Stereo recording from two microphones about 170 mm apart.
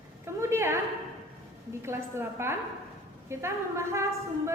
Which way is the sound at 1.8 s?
15° right (ahead or behind).